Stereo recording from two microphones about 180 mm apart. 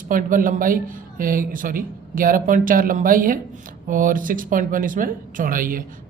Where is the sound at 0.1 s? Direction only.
50° right (ahead or behind).